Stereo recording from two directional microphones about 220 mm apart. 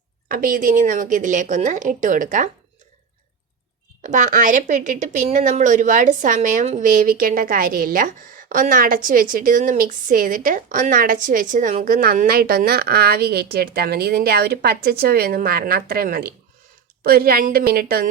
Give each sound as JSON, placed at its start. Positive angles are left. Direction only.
{"t": 0.3, "sound": "a woman's voice", "side_deg": -40}
{"t": 4.0, "sound": "a woman's voice", "side_deg": -35}